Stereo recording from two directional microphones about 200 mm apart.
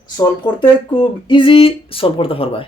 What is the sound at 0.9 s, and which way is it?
Speech, 25° left (ahead or behind).